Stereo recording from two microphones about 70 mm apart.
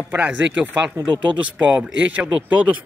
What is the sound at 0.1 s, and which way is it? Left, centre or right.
Speech, right.